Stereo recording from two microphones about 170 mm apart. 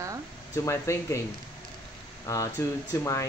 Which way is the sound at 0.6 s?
15° left (ahead or behind).